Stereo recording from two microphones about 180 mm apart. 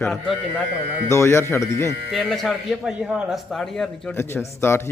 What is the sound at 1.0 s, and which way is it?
Speech, 15° left (ahead or behind).